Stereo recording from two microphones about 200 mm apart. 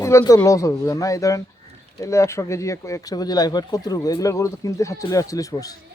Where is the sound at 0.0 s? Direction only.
15° left (ahead or behind).